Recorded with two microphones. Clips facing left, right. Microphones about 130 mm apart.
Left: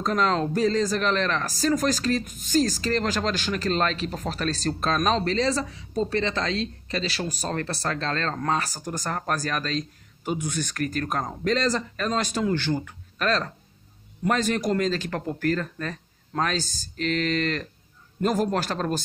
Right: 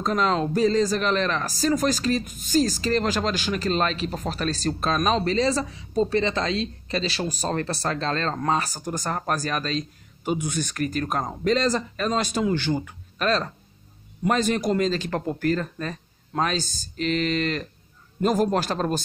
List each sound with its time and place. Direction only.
0.0 s speech: 10° right (ahead or behind)